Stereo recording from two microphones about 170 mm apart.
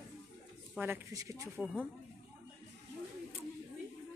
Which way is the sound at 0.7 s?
10° right (ahead or behind).